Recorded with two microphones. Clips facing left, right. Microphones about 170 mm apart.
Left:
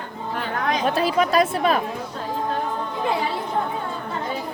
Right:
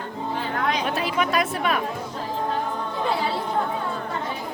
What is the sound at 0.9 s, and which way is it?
Speech, 35° left (ahead or behind).